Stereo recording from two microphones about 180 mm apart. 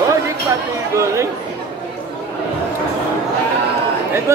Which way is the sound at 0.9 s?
15° right (ahead or behind).